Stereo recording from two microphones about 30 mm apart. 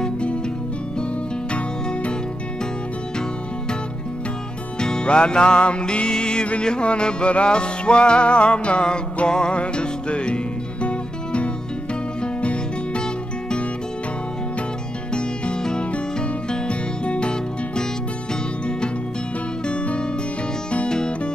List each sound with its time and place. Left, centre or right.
4.7 s music: left
15.1 s music: left
19.6 s music: left